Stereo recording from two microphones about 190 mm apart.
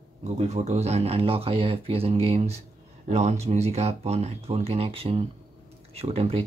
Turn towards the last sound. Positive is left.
turn(degrees=-30)  # may be behind; listen again after turning